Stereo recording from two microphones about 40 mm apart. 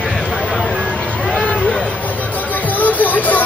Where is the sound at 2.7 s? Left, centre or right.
Left.